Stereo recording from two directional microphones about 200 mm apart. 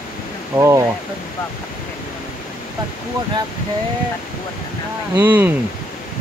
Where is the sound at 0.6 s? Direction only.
15° right (ahead or behind).